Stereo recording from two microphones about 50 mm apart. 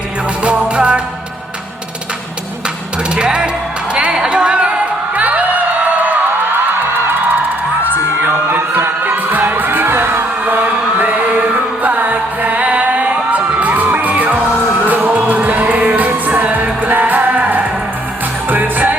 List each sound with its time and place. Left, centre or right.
0.6 s music: centre
3.2 s music: centre
7.9 s music: right